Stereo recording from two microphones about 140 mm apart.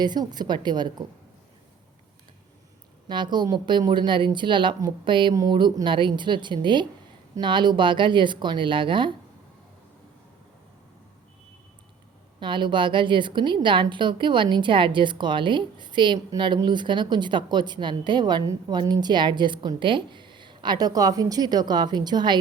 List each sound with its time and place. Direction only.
0.0 s a woman's voice: 30° right (ahead or behind)
3.1 s a woman's voice: 35° right (ahead or behind)
12.4 s a woman's voice: 35° right (ahead or behind)